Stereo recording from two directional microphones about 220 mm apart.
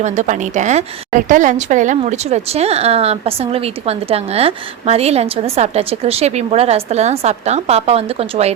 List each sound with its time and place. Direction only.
0.0 s a woman's voice: 35° right (ahead or behind)